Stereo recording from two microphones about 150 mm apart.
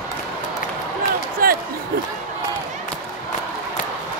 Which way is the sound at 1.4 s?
75° right (ahead or behind).